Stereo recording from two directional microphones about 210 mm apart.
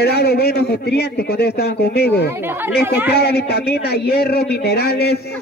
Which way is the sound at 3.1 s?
50° left (ahead or behind).